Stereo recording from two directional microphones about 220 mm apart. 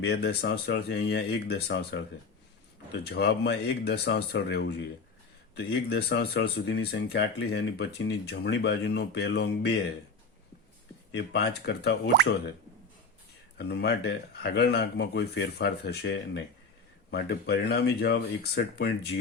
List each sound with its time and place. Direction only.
0.0 s speech: 50° left (ahead or behind)
11.1 s speech: 50° left (ahead or behind)
13.7 s speech: 50° left (ahead or behind)